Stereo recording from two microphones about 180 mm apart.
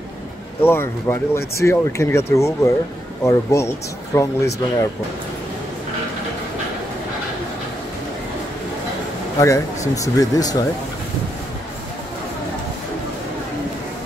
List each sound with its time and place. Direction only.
0.6 s speech: 15° left (ahead or behind)
9.4 s speech: 15° left (ahead or behind)